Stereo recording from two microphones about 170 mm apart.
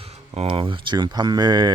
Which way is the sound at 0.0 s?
35° right (ahead or behind).